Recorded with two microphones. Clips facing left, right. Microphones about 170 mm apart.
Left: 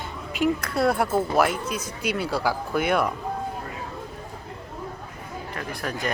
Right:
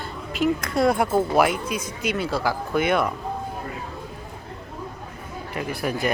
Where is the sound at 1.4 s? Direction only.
10° right (ahead or behind).